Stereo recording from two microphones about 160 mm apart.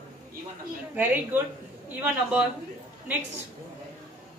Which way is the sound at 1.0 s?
10° right (ahead or behind).